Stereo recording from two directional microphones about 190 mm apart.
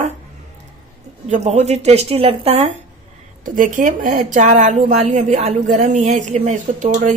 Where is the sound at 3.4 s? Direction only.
45° right (ahead or behind).